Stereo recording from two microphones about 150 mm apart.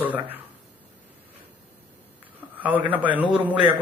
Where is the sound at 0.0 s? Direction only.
10° right (ahead or behind).